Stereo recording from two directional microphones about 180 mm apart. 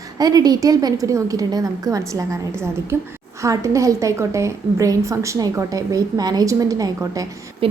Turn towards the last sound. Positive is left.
turn(degrees=-20)  # may be behind; listen again after turning